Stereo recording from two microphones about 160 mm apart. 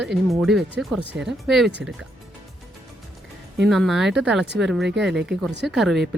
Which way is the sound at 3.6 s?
Centre (ahead or behind).